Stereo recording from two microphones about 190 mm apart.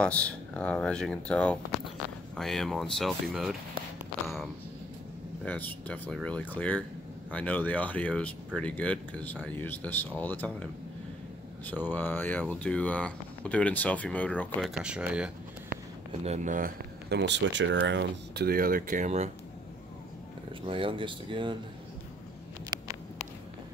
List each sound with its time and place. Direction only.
0.0 s speech: 5° left (ahead or behind)
5.4 s speech: 10° left (ahead or behind)
14.7 s speech: 5° right (ahead or behind)
16.1 s speech: 35° right (ahead or behind)
17.2 s speech: 70° right (ahead or behind); by 19.3 s 35° right (ahead or behind)
20.6 s speech: 25° right (ahead or behind)